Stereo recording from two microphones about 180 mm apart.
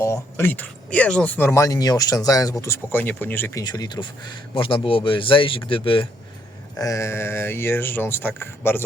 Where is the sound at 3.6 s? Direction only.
25° left (ahead or behind).